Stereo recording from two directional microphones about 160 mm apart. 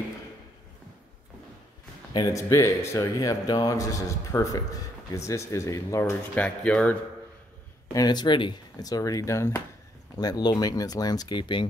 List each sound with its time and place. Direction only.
2.1 s speech: 20° left (ahead or behind)
7.9 s speech: 25° left (ahead or behind)